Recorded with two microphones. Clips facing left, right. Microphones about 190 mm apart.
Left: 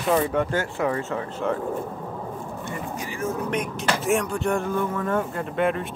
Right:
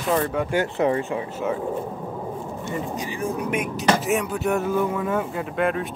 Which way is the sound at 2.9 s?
20° right (ahead or behind).